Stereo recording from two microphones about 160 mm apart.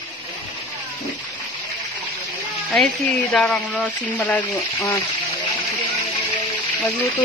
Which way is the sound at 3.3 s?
5° left (ahead or behind).